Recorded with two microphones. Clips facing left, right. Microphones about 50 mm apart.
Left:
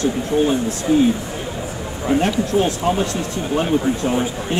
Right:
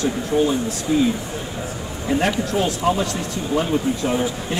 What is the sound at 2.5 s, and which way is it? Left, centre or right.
Speech, left.